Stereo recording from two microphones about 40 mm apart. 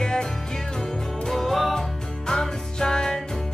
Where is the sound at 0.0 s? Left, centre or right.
Centre.